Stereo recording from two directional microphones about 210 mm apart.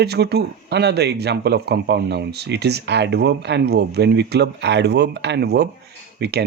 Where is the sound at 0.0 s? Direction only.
50° right (ahead or behind).